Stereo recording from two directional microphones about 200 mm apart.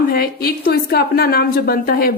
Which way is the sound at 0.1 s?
50° left (ahead or behind).